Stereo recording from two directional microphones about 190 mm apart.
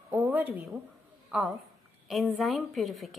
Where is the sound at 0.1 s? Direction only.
10° right (ahead or behind).